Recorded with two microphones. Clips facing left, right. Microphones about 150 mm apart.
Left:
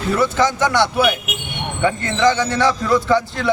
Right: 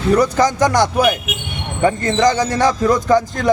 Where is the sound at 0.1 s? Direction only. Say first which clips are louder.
Right 3 dB; 40° right (ahead or behind).